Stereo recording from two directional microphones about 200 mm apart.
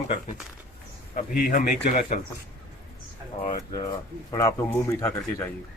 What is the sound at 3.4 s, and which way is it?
Speech, 20° left (ahead or behind).